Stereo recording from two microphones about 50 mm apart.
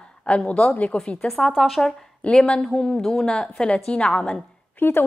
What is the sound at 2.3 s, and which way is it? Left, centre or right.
Speech, centre.